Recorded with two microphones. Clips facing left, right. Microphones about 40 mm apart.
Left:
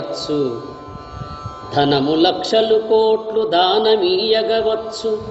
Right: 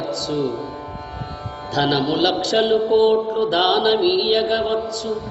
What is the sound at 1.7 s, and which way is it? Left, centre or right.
Speech, centre.